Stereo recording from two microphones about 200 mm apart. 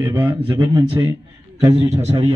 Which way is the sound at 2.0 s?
30° right (ahead or behind).